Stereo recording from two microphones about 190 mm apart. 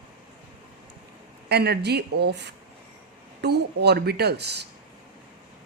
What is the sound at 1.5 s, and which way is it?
A woman's voice, 60° right (ahead or behind).